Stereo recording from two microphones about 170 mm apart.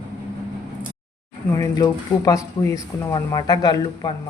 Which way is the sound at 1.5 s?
20° left (ahead or behind).